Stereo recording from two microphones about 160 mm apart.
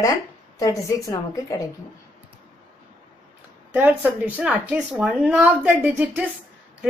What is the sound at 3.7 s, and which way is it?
Speech, 10° right (ahead or behind).